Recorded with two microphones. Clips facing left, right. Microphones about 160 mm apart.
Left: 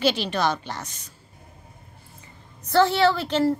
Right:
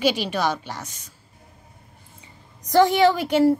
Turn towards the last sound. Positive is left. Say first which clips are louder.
# right 4 dB
turn(degrees=-10)  # may be behind; listen again after turning